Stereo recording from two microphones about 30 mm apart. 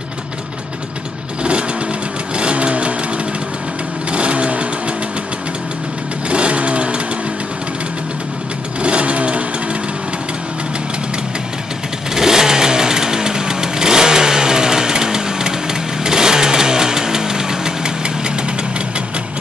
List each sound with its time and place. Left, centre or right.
2.3 s sewing machine: right
4.1 s vehicle: right
6.3 s vehicle: right
8.8 s vehicle: right
12.2 s vehicle: centre